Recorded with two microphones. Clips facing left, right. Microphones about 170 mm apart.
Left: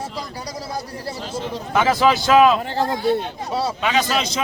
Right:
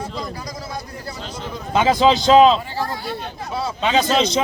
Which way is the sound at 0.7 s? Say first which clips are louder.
Left 3 dB; 30° left (ahead or behind).